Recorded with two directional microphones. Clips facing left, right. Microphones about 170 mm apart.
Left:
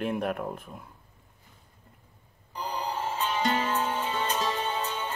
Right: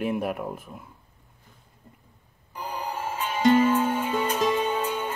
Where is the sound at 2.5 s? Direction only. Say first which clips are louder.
Even; 10° right (ahead or behind).